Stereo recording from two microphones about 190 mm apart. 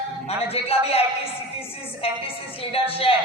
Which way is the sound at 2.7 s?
30° left (ahead or behind).